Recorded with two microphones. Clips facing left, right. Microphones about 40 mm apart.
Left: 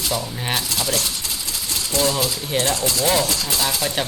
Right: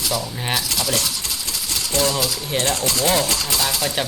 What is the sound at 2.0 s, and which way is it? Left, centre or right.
Speech, left.